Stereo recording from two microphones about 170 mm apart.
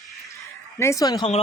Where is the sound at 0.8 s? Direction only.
20° left (ahead or behind).